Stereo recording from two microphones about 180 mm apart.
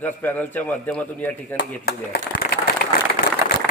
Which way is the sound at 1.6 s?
60° left (ahead or behind).